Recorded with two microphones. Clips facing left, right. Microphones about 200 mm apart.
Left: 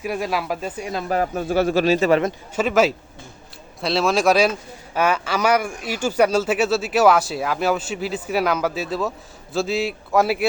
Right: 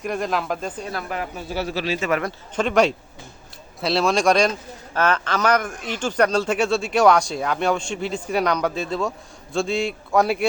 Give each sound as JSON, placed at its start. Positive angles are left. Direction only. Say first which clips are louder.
{"t": 0.0, "sound": "speech", "louder": "even", "side_deg": 5}
{"t": 1.0, "sound": "speech", "louder": "left 7 dB", "side_deg": 40}
{"t": 2.6, "sound": "speech", "louder": "even", "side_deg": 5}